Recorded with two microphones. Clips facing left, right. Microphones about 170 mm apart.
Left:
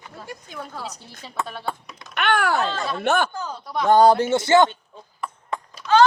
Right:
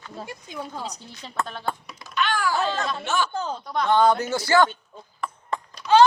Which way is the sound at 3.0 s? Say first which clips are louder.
Left 7 dB; 55° left (ahead or behind).